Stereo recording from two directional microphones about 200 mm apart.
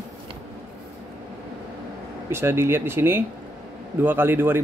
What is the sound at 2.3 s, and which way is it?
A man's voice, 10° right (ahead or behind).